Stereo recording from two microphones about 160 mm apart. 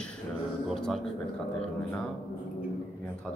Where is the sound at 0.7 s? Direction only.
Centre (ahead or behind).